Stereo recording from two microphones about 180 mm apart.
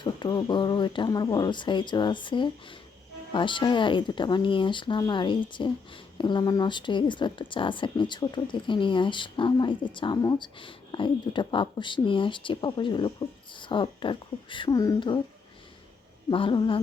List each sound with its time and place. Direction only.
0.0 s speech: 25° left (ahead or behind)
16.3 s speech: 30° left (ahead or behind)